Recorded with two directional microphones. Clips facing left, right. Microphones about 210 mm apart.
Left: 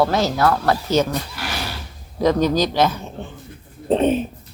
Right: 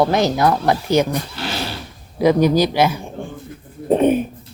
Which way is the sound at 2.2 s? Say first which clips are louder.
Right 3 dB; 10° right (ahead or behind).